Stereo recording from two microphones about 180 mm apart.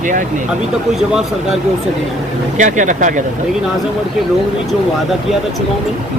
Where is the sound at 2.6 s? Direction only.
45° right (ahead or behind).